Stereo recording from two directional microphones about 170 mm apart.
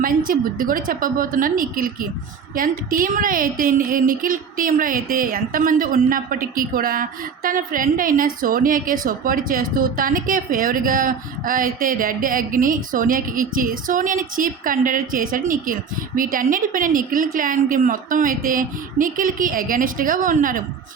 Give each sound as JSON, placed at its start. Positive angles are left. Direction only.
{"t": 0.0, "sound": "a woman's voice", "side_deg": -55}